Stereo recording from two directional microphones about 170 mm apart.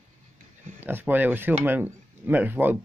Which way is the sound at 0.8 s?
10° right (ahead or behind).